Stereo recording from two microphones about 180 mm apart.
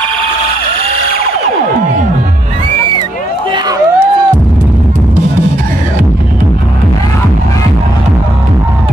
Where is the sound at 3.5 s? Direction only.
25° right (ahead or behind).